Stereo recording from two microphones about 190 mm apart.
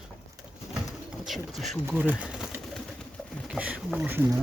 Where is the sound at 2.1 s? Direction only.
5° right (ahead or behind).